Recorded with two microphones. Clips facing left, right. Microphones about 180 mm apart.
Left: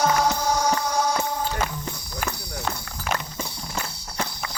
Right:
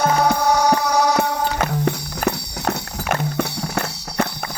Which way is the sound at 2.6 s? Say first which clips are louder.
Right 7 dB; 65° right (ahead or behind).